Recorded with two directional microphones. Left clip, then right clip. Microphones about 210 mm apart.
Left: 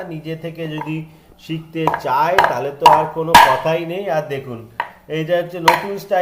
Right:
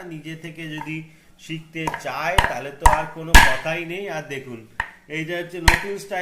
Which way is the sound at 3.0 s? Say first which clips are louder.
Left 9 dB; 15° right (ahead or behind).